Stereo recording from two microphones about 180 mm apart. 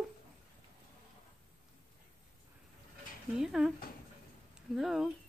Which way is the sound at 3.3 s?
5° right (ahead or behind).